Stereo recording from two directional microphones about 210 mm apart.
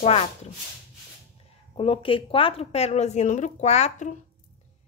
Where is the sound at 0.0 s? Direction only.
25° left (ahead or behind).